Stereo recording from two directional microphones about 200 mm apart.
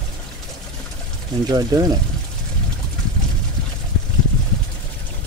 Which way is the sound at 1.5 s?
20° right (ahead or behind).